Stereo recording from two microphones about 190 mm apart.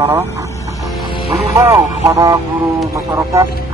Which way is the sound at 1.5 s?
20° right (ahead or behind).